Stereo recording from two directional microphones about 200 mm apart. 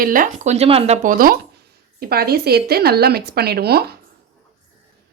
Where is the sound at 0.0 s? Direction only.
45° right (ahead or behind).